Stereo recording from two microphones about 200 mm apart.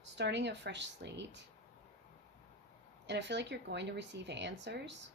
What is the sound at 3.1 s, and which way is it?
A woman's voice, 60° right (ahead or behind).